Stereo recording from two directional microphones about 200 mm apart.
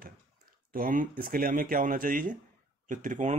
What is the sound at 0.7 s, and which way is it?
Speech, 45° right (ahead or behind).